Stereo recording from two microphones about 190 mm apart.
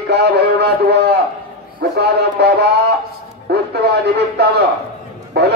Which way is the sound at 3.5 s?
60° right (ahead or behind).